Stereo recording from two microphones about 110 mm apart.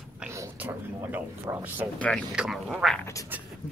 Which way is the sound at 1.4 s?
20° right (ahead or behind).